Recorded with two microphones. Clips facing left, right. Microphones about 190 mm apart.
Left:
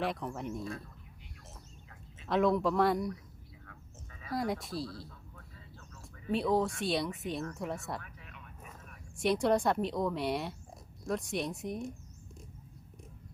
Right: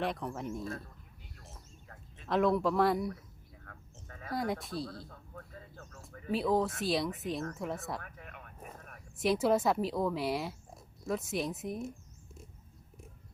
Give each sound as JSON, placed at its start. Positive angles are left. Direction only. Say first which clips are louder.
{"t": 0.0, "sound": "a woman's voice", "louder": "even", "side_deg": 0}
{"t": 2.2, "sound": "a woman's voice", "louder": "even", "side_deg": 0}
{"t": 3.7, "sound": "sheep", "louder": "right 5 dB", "side_deg": -50}
{"t": 4.3, "sound": "a woman's voice", "louder": "even", "side_deg": 0}
{"t": 4.9, "sound": "a sound", "louder": "right 1 dB", "side_deg": -50}
{"t": 6.3, "sound": "a woman's voice", "louder": "even", "side_deg": 0}
{"t": 8.0, "sound": "a sound", "louder": "right 3 dB", "side_deg": -50}
{"t": 9.1, "sound": "a woman's voice", "louder": "even", "side_deg": 0}